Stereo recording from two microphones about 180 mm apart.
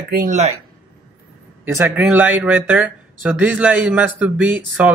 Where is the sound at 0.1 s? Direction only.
45° right (ahead or behind).